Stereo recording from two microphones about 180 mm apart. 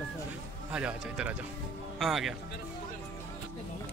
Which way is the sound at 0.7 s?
5° right (ahead or behind).